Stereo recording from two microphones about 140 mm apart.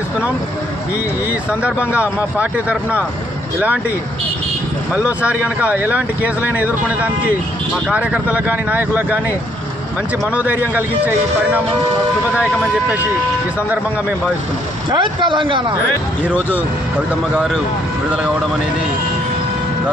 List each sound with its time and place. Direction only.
1.3 s speech: 10° right (ahead or behind)
4.9 s speech: 10° right (ahead or behind)
10.3 s speech: 10° right (ahead or behind)
14.9 s speech: 35° right (ahead or behind)
16.3 s speech: 10° right (ahead or behind)